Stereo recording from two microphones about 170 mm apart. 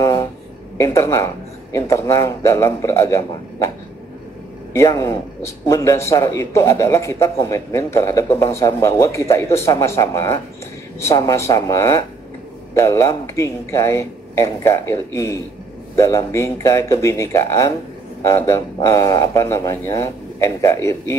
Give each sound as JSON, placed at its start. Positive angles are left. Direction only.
{"t": 0.0, "sound": "a sound", "side_deg": 20}
{"t": 0.7, "sound": "speech", "side_deg": 15}
{"t": 4.7, "sound": "speech", "side_deg": 20}